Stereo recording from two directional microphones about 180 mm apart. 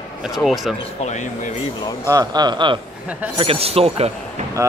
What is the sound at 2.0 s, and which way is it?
Speech, 20° right (ahead or behind).